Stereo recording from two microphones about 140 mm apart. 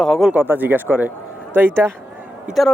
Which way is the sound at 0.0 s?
Centre (ahead or behind).